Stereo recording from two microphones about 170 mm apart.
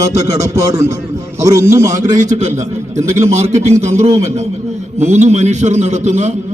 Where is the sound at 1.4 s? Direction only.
20° right (ahead or behind).